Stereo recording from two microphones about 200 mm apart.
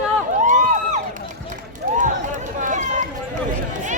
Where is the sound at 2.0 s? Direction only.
40° right (ahead or behind).